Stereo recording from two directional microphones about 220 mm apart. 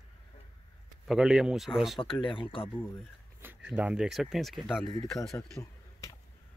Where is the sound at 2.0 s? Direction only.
25° left (ahead or behind).